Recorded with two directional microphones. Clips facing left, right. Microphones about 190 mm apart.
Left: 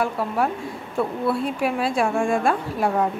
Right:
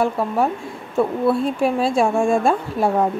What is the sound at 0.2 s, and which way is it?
Speech, 25° right (ahead or behind).